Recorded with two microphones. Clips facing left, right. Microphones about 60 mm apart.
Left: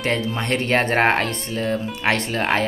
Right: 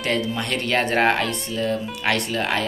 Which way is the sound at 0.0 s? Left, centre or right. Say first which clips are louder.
Left 1 dB; left.